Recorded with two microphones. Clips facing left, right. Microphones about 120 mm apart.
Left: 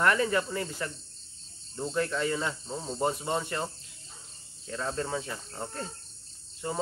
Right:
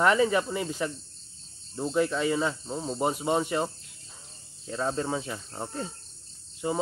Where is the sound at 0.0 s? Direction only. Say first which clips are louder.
Right 3 dB; 20° right (ahead or behind).